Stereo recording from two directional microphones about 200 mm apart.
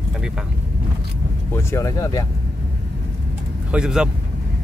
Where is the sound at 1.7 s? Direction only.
15° left (ahead or behind).